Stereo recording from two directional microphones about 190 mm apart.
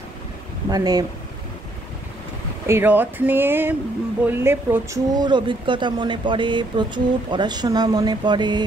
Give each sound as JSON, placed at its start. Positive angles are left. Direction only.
{"t": 0.7, "sound": "speech", "side_deg": -20}
{"t": 2.6, "sound": "speech", "side_deg": -10}
{"t": 5.1, "sound": "speech", "side_deg": -25}